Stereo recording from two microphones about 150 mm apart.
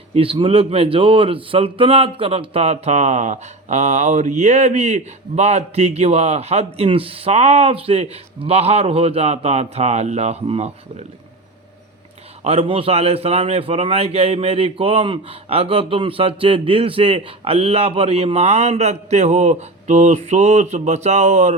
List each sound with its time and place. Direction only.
0.1 s a man's voice: 35° right (ahead or behind)
12.4 s a man's voice: 40° right (ahead or behind)